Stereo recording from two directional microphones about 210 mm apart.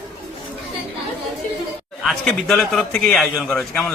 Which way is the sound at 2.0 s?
Centre (ahead or behind).